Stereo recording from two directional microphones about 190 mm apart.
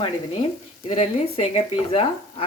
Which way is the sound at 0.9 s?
35° left (ahead or behind).